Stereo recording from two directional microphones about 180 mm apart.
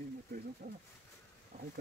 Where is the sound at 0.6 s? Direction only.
50° right (ahead or behind).